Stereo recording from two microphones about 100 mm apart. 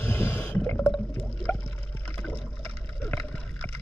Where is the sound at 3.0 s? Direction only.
15° left (ahead or behind).